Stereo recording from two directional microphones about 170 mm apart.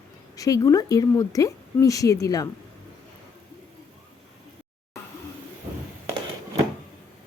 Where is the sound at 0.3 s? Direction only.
20° left (ahead or behind).